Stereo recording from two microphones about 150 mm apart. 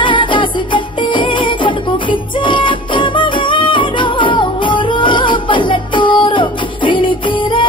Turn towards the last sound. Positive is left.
turn(degrees=35)  # may be behind; listen again after turning